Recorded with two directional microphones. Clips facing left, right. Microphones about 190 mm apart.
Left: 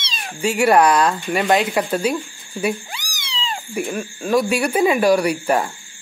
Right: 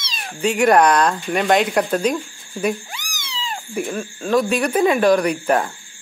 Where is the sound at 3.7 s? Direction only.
10° left (ahead or behind).